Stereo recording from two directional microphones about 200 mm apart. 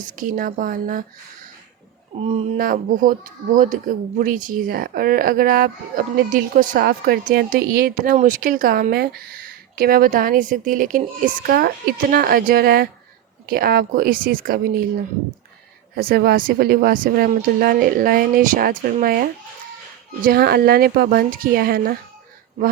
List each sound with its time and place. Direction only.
0.0 s speech: 40° right (ahead or behind)
2.6 s speech: 45° right (ahead or behind)
16.0 s speech: 50° right (ahead or behind)